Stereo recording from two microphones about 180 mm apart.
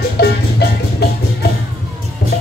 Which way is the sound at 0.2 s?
65° left (ahead or behind).